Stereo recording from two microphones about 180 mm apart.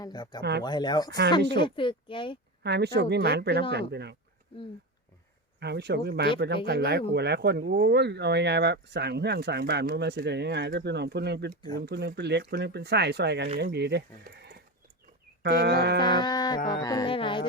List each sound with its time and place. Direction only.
0.0 s speech: 25° left (ahead or behind)
2.6 s speech: 65° right (ahead or behind)
5.5 s speech: 70° right (ahead or behind)
15.4 s speech: 65° right (ahead or behind)
16.0 s speech: 25° left (ahead or behind)